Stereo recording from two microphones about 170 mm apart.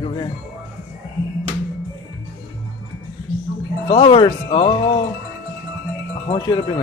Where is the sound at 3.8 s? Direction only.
30° left (ahead or behind).